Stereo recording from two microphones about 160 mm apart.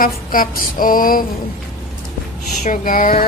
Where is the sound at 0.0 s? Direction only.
60° left (ahead or behind).